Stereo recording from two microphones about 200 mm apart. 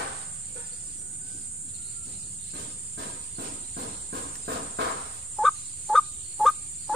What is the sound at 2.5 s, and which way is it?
Cricket, 60° right (ahead or behind).